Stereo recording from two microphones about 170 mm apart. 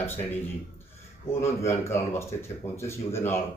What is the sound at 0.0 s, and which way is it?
Speech, 10° left (ahead or behind).